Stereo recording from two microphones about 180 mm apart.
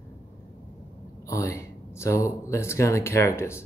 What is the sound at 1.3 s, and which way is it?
Speech, 15° left (ahead or behind).